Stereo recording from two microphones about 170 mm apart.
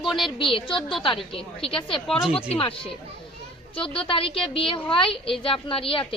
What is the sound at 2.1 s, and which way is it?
Speech, 5° right (ahead or behind).